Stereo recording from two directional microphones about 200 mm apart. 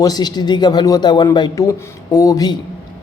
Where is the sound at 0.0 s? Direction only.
20° left (ahead or behind).